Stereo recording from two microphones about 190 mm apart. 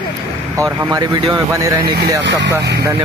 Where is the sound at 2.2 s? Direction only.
70° right (ahead or behind).